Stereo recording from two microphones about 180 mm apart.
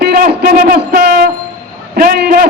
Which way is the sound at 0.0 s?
60° right (ahead or behind).